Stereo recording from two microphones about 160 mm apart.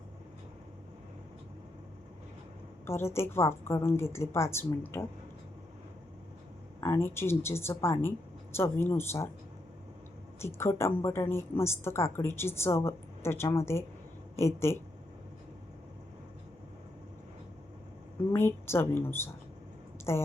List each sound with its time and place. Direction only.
2.8 s a woman's voice: 15° left (ahead or behind)
6.8 s a woman's voice: 15° left (ahead or behind)
10.4 s a woman's voice: 15° left (ahead or behind)
18.3 s a woman's voice: 15° left (ahead or behind)